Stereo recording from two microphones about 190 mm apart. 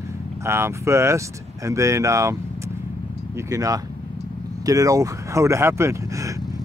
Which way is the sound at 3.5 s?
20° right (ahead or behind).